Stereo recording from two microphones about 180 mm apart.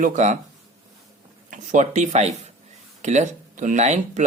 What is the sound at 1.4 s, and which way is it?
Speech, 45° right (ahead or behind).